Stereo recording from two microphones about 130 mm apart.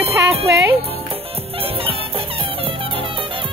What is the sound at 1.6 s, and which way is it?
Music, 50° right (ahead or behind).